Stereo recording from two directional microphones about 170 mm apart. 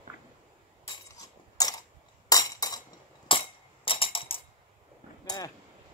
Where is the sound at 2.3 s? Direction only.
20° left (ahead or behind).